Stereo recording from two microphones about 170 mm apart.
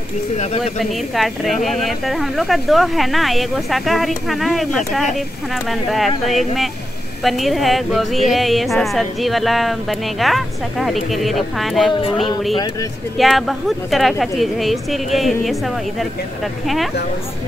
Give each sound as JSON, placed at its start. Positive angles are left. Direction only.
{"t": 0.7, "sound": "a woman's voice", "side_deg": 0}
{"t": 11.9, "sound": "a sound", "side_deg": 30}
{"t": 13.2, "sound": "a woman's voice", "side_deg": 0}
{"t": 16.6, "sound": "a woman's voice", "side_deg": 0}